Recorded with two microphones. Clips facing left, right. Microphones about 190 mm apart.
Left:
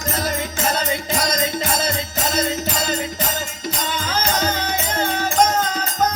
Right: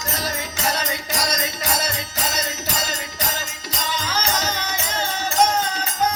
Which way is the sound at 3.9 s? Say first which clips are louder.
Left 1 dB; 55° left (ahead or behind).